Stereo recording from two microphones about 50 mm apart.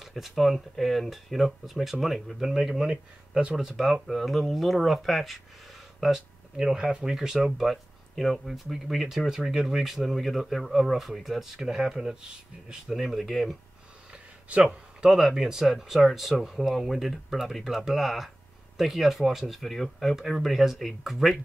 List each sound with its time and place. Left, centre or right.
0.0 s speech: centre
2.9 s speech: centre
3.5 s speech: centre
14.6 s speech: centre